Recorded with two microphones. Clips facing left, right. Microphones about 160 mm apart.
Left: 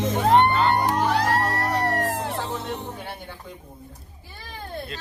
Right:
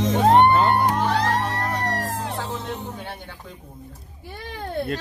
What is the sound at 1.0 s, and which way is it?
Music, 10° left (ahead or behind).